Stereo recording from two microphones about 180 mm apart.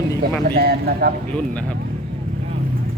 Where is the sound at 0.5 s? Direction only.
60° right (ahead or behind).